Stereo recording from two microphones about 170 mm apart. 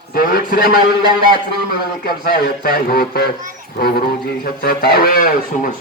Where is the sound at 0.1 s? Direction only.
60° left (ahead or behind).